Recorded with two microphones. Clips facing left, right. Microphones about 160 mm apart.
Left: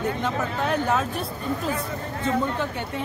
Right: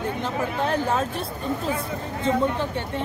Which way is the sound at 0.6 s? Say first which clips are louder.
Even; centre (ahead or behind).